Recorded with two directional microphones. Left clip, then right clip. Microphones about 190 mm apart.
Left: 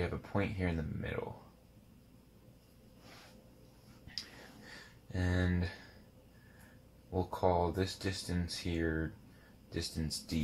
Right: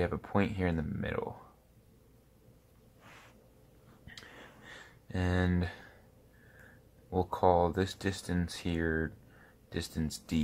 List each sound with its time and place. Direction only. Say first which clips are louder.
0.1 s speech: right 5 dB; 15° right (ahead or behind)
5.1 s speech: right 4 dB; 15° right (ahead or behind)
7.1 s speech: right 5 dB; 15° right (ahead or behind)